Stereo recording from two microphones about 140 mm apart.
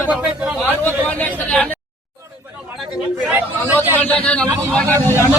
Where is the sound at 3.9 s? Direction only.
10° left (ahead or behind).